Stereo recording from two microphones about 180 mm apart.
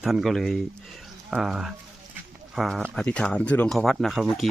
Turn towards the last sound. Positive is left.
turn(degrees=0)  # may be behind; listen again after turning